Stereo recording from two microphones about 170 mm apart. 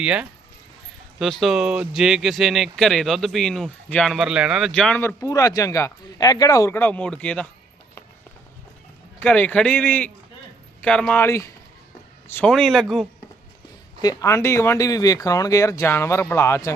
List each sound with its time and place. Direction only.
0.0 s speech: 5° right (ahead or behind)
9.2 s speech: 10° left (ahead or behind)
14.0 s speech: 20° left (ahead or behind)